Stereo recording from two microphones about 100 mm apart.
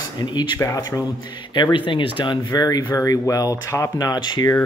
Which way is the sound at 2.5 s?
40° left (ahead or behind).